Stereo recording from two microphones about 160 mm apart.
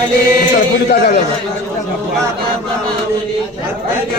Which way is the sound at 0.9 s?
80° left.